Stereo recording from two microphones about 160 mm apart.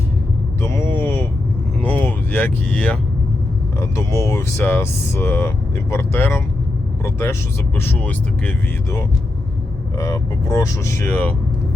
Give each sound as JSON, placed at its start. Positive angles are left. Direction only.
{"t": 0.6, "sound": "a sound", "side_deg": 15}
{"t": 1.8, "sound": "vehicle", "side_deg": 10}
{"t": 3.8, "sound": "speech", "side_deg": 15}